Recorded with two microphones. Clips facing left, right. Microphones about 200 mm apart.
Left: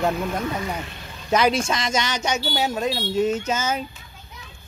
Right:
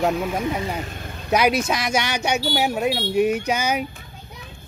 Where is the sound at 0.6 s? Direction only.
40° right (ahead or behind).